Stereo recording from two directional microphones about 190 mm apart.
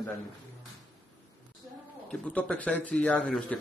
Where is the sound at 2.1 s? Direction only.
5° left (ahead or behind).